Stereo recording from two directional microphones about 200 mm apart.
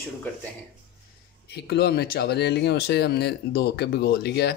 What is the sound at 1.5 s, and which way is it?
Speech, 55° left (ahead or behind).